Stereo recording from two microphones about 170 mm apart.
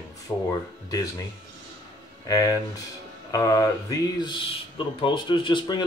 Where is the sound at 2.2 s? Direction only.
20° left (ahead or behind).